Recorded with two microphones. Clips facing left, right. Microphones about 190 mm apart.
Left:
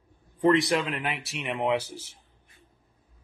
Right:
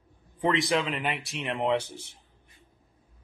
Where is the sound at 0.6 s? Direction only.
Centre (ahead or behind).